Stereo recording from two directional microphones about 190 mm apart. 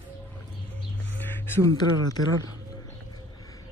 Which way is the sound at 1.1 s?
10° left (ahead or behind).